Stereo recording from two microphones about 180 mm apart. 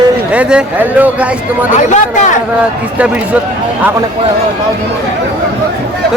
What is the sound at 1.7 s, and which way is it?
Speech, 40° left (ahead or behind).